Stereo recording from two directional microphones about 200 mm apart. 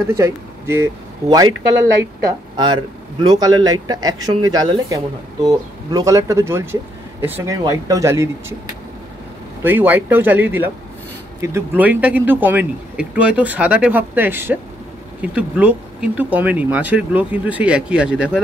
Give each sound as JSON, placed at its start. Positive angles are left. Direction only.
{"t": 0.1, "sound": "a man's voice", "side_deg": -15}
{"t": 9.6, "sound": "speech", "side_deg": -10}